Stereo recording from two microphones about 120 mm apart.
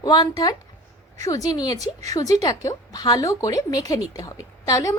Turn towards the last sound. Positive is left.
turn(degrees=30)  # may be behind; listen again after turning